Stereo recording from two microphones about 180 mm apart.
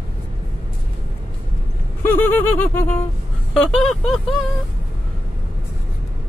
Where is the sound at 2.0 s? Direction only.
10° left (ahead or behind).